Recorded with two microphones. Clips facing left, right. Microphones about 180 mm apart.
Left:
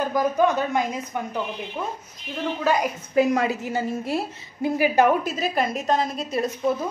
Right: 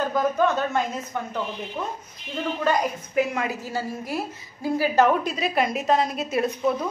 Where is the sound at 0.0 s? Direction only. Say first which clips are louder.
Left 1 dB; 15° left (ahead or behind).